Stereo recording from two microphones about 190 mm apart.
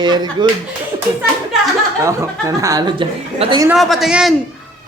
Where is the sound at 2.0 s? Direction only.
15° right (ahead or behind).